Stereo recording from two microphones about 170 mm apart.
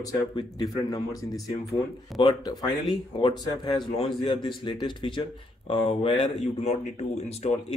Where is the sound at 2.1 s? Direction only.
25° left (ahead or behind).